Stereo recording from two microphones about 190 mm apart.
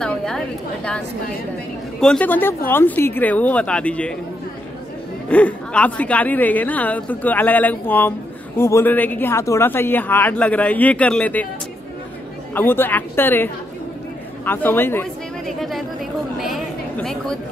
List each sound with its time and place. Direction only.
0.0 s a sound: 5° left (ahead or behind)
2.0 s speech: 5° left (ahead or behind)
5.3 s speech: 5° left (ahead or behind)
12.5 s speech: 10° left (ahead or behind)
16.3 s chatter: centre (ahead or behind)